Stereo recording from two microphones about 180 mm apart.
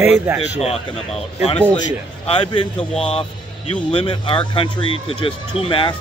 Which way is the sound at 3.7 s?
30° left (ahead or behind).